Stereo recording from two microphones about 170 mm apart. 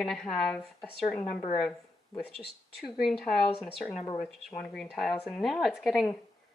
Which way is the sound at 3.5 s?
35° left (ahead or behind).